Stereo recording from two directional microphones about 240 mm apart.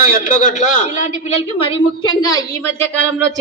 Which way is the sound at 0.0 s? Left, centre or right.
Left.